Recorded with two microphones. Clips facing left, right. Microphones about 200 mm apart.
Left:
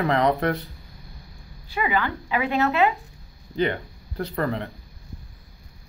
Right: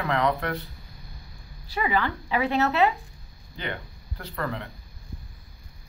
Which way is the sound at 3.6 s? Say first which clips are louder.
Left 7 dB; 40° left (ahead or behind).